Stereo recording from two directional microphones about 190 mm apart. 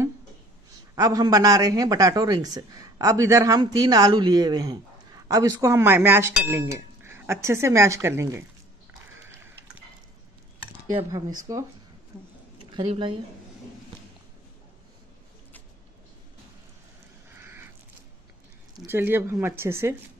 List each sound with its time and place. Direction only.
0.9 s speech: 20° right (ahead or behind)
11.1 s speech: 20° right (ahead or behind)
12.7 s speech: 30° right (ahead or behind)
17.3 s crow: 10° right (ahead or behind)
18.9 s speech: 10° right (ahead or behind)